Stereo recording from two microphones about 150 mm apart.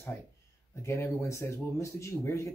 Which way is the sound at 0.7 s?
20° left (ahead or behind).